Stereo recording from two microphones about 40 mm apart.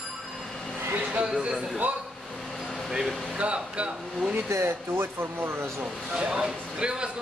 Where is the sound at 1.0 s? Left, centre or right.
Right.